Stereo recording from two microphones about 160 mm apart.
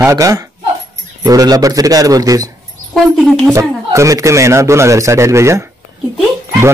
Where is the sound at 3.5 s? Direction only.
20° right (ahead or behind).